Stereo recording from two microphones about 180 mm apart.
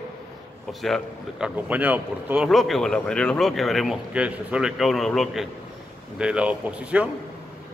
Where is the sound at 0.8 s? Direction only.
Centre (ahead or behind).